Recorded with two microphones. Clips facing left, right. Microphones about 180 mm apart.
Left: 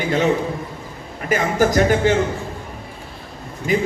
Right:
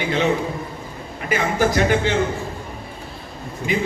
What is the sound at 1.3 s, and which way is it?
Speech, 40° left (ahead or behind).